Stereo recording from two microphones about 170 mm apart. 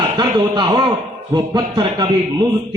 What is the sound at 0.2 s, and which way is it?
A man's voice, 25° right (ahead or behind).